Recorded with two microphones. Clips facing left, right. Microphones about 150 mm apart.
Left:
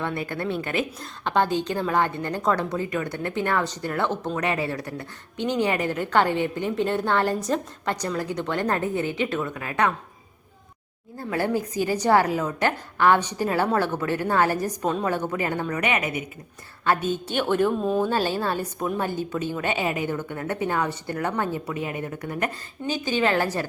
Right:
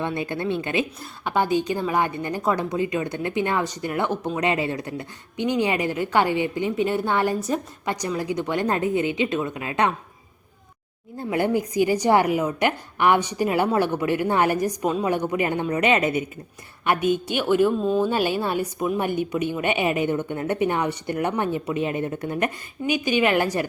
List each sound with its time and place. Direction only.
0.0 s a woman's voice: 20° right (ahead or behind)
11.2 s a woman's voice: 20° right (ahead or behind)
16.8 s a woman's voice: 15° right (ahead or behind); by 18.1 s 5° left (ahead or behind)
18.1 s a woman's voice: 15° right (ahead or behind)